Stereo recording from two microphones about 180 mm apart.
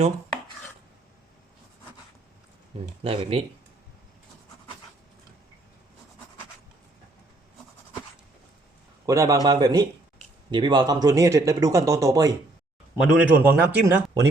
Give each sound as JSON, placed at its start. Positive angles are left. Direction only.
{"t": 3.0, "sound": "speech", "side_deg": -30}
{"t": 9.0, "sound": "speech", "side_deg": -20}
{"t": 13.1, "sound": "a man's voice", "side_deg": -10}